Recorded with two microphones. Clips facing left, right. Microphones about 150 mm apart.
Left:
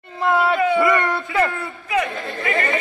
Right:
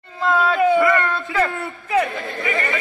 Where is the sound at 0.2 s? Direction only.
20° left (ahead or behind).